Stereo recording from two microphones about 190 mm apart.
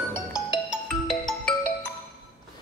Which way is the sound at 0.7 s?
Centre (ahead or behind).